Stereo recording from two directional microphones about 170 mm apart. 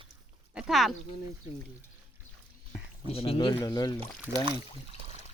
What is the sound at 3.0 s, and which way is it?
Speech, 35° left (ahead or behind).